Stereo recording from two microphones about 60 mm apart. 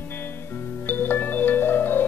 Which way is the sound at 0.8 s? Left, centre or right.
Left.